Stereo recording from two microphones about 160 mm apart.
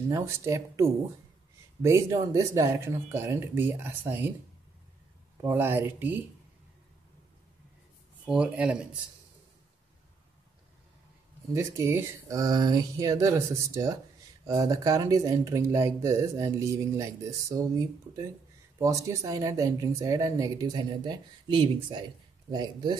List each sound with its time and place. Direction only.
0.1 s speech: 20° right (ahead or behind)
5.4 s speech: 15° right (ahead or behind)
8.3 s speech: 5° right (ahead or behind)
11.5 s speech: 15° right (ahead or behind)